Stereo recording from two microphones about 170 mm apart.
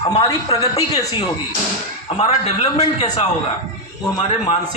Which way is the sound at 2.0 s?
35° left (ahead or behind).